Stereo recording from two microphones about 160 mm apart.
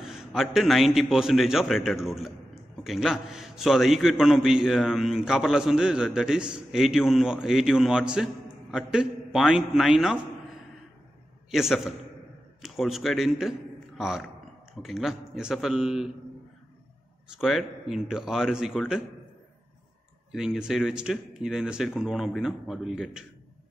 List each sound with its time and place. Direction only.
0.0 s a man's voice: 5° right (ahead or behind)
11.5 s a man's voice: centre (ahead or behind)
17.3 s a man's voice: centre (ahead or behind)
20.3 s a man's voice: 5° right (ahead or behind)